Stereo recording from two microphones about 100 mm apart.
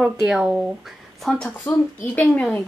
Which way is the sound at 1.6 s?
15° left (ahead or behind).